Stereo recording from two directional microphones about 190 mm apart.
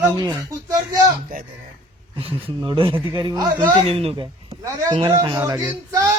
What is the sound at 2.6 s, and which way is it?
Speech, 25° right (ahead or behind).